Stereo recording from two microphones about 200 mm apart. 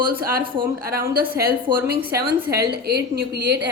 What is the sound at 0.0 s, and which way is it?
A woman's voice, 45° right (ahead or behind).